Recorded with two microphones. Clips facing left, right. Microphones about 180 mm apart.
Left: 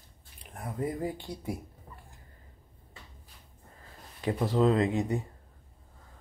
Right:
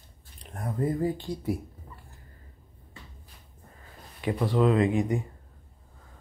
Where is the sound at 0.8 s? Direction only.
15° left (ahead or behind).